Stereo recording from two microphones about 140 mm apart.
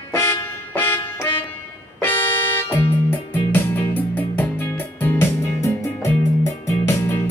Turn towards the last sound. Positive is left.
turn(degrees=20)  # may be behind; listen again after turning